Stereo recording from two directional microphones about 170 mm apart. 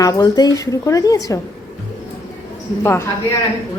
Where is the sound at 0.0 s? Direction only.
20° left (ahead or behind).